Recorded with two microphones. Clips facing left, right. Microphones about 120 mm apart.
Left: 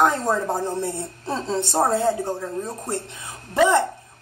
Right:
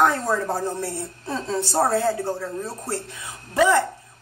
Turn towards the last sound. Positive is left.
turn(degrees=20)  # may be behind; listen again after turning